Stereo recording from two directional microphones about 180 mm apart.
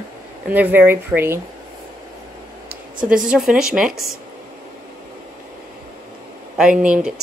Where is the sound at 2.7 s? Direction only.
5° right (ahead or behind).